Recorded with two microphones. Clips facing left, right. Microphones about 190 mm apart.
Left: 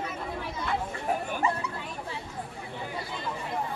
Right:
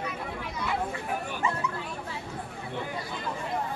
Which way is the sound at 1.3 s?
35° left (ahead or behind).